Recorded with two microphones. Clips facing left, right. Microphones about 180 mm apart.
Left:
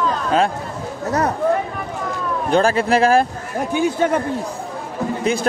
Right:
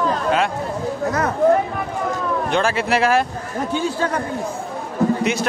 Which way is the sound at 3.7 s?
15° left (ahead or behind).